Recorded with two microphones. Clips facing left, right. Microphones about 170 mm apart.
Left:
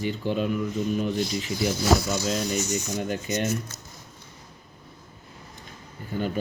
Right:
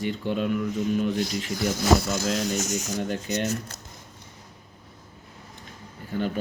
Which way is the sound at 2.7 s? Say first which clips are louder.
Left 1 dB; 90° right.